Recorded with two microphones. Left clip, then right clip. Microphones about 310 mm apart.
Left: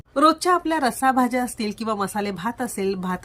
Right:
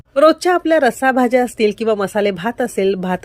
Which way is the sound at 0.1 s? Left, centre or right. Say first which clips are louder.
Right 6 dB; centre.